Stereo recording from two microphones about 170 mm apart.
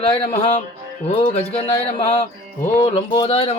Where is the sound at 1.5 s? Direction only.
35° left (ahead or behind).